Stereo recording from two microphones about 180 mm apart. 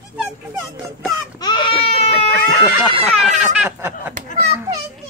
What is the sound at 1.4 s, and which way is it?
Baby cry, 25° left (ahead or behind).